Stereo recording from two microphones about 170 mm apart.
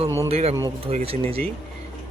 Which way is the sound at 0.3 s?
40° right (ahead or behind).